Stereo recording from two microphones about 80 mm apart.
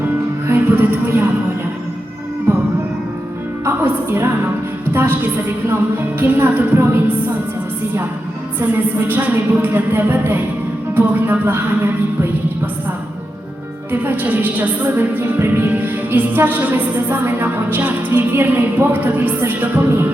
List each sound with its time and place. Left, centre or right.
0.4 s music: right
2.5 s music: right
5.6 s music: right
9.0 s music: right
13.9 s music: right